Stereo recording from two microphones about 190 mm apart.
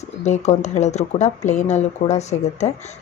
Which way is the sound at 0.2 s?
35° left (ahead or behind).